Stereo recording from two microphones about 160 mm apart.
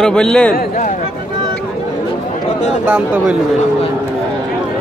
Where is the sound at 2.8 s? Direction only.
5° right (ahead or behind).